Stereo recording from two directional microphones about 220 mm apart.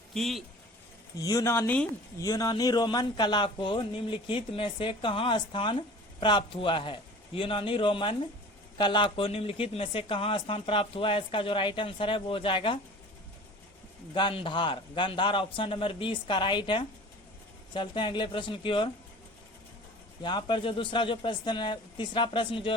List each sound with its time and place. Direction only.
0.1 s speech: centre (ahead or behind)
1.2 s speech: 15° left (ahead or behind)
14.1 s speech: 20° left (ahead or behind)
20.2 s speech: 20° left (ahead or behind)